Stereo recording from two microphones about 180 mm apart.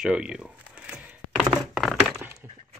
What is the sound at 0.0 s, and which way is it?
Speech, 5° right (ahead or behind).